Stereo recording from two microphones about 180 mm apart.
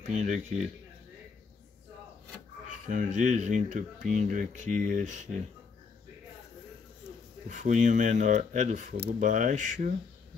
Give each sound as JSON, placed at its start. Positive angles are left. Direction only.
{"t": 0.0, "sound": "speech", "side_deg": -40}
{"t": 2.9, "sound": "speech", "side_deg": -45}
{"t": 7.4, "sound": "speech", "side_deg": -45}